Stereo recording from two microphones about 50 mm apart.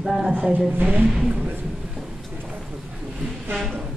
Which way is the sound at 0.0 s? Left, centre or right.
Centre.